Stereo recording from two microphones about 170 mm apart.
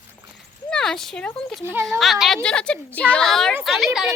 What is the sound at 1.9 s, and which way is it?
A woman's voice, centre (ahead or behind).